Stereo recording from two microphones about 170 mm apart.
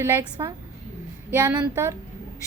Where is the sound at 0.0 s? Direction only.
15° right (ahead or behind).